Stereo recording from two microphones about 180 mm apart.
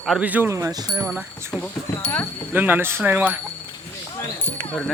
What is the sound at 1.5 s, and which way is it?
Speech, 15° left (ahead or behind).